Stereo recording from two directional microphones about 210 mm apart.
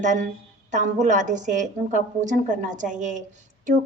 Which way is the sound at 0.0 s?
35° right (ahead or behind).